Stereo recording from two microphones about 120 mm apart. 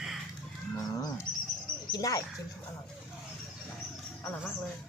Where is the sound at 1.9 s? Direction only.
30° left (ahead or behind).